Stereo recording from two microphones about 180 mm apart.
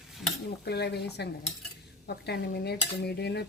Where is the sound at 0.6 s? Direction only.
65° left (ahead or behind).